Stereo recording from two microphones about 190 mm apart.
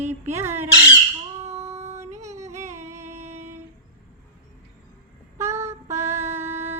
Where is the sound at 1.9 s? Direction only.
35° right (ahead or behind).